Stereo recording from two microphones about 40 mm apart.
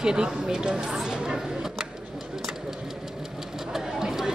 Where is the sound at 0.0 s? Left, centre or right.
Centre.